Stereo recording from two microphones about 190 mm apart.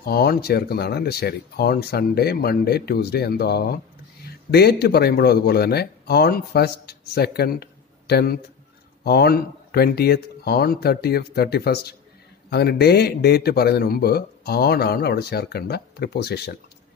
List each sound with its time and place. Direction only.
0.0 s a man's voice: 55° left (ahead or behind)